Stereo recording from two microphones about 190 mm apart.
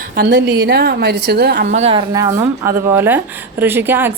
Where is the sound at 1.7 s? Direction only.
35° right (ahead or behind).